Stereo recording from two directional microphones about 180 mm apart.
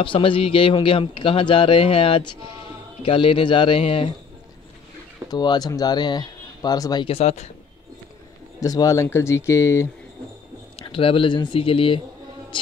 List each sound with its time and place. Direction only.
0.0 s a man's voice: 30° left (ahead or behind)
5.3 s a man's voice: 20° left (ahead or behind)
8.5 s speech: 20° left (ahead or behind)
10.8 s a man's voice: 30° left (ahead or behind)